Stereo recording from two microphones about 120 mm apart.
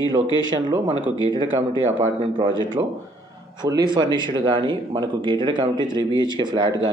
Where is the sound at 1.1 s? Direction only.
35° left (ahead or behind).